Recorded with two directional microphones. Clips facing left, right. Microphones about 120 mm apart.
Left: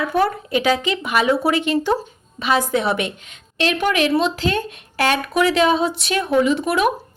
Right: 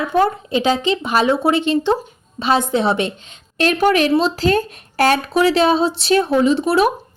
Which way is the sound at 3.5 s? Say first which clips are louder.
Right 4 dB; 45° right (ahead or behind).